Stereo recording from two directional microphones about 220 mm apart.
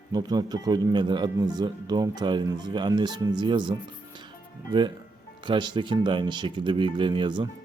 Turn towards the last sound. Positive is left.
turn(degrees=-20)  # may be behind; listen again after turning